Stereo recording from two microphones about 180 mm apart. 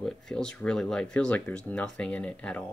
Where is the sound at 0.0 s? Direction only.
5° left (ahead or behind).